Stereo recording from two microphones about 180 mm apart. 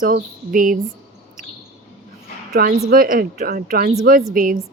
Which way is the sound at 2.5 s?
55° right (ahead or behind).